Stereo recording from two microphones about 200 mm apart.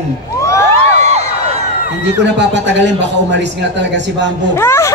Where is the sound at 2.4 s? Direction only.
60° right (ahead or behind).